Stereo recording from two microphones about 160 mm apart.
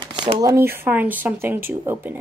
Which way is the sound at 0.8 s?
10° right (ahead or behind).